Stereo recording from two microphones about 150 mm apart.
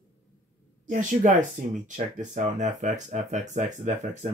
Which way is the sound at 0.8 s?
60° right (ahead or behind).